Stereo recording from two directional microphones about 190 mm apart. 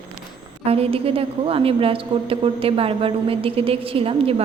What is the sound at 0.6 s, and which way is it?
A woman's voice, 30° right (ahead or behind).